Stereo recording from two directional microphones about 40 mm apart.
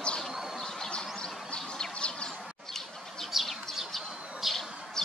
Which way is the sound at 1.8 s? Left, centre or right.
Left.